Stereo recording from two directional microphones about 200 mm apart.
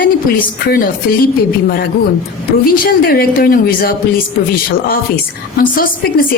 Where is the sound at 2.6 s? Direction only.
45° left (ahead or behind).